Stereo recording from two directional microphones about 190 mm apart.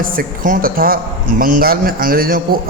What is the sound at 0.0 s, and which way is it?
A man's voice, 45° right (ahead or behind).